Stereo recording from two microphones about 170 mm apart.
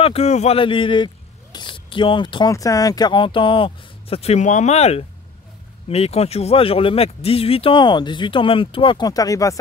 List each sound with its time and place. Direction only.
0.0 s a man's voice: 40° left (ahead or behind); by 9.6 s 20° left (ahead or behind)